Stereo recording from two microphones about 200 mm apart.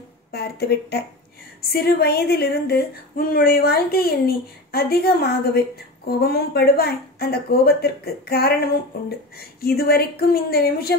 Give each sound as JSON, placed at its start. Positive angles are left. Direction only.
{"t": 0.3, "sound": "speech", "side_deg": 50}